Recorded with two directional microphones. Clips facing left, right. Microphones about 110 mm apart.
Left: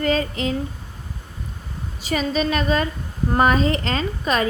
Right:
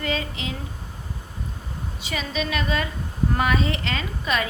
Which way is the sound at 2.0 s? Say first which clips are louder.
Left 7 dB; 40° left (ahead or behind).